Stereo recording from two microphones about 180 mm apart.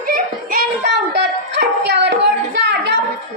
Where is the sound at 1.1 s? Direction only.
65° right (ahead or behind).